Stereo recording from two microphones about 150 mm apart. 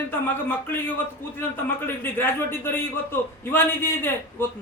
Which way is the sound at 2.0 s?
15° left (ahead or behind).